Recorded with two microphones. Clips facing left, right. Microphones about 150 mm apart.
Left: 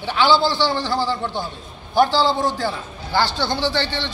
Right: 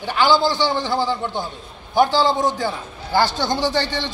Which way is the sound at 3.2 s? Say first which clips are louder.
Right 1 dB; 45° right (ahead or behind).